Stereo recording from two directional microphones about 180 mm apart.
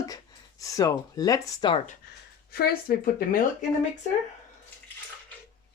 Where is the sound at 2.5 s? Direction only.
60° left (ahead or behind).